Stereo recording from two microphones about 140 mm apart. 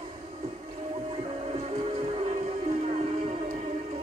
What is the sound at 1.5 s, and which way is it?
Music, 50° right (ahead or behind).